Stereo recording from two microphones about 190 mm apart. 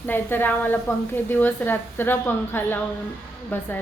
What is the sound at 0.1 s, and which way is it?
A woman's voice, 10° left (ahead or behind).